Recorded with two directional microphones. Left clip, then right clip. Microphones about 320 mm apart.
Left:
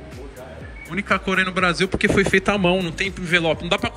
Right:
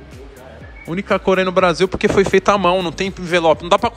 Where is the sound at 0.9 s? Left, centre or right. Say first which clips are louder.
Right 4 dB; centre.